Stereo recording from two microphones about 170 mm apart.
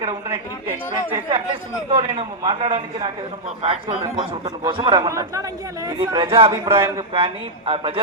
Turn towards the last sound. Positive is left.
turn(degrees=-30)  # may be behind; listen again after turning